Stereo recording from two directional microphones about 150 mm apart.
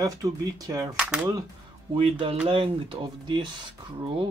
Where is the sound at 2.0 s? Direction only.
35° right (ahead or behind).